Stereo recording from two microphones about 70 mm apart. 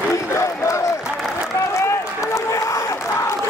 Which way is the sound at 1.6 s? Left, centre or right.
Left.